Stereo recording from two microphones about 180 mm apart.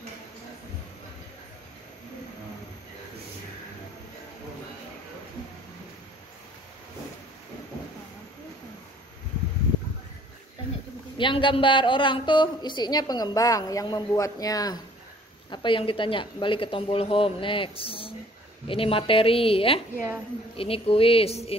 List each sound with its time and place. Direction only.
11.1 s a woman's voice: 25° left (ahead or behind)